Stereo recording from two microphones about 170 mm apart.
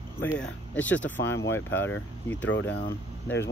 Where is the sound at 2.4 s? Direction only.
90° left.